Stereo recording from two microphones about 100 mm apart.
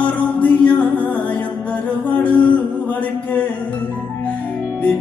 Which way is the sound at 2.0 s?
15° left (ahead or behind).